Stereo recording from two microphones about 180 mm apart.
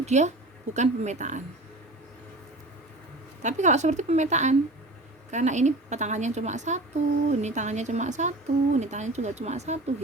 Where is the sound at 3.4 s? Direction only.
40° right (ahead or behind).